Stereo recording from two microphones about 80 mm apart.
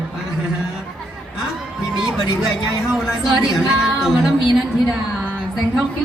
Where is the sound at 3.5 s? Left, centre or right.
Centre.